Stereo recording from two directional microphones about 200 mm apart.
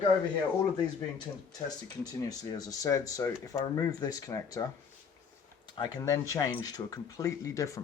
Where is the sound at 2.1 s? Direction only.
15° left (ahead or behind).